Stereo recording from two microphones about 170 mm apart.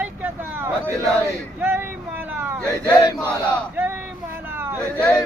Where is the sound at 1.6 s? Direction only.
10° right (ahead or behind).